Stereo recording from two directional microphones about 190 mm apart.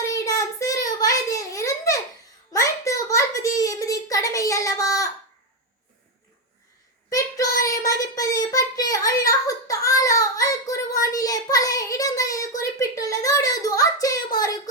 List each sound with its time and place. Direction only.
0.0 s child singing: 15° left (ahead or behind)
2.5 s a sound: 15° left (ahead or behind)
7.1 s child singing: 15° left (ahead or behind)